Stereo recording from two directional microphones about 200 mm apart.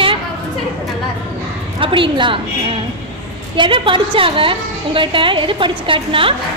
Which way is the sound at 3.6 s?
25° right (ahead or behind).